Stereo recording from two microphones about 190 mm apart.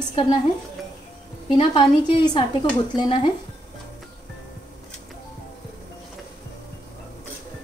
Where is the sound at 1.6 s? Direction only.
30° left (ahead or behind).